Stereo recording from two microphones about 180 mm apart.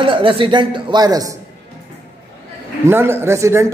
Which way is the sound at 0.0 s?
30° right (ahead or behind).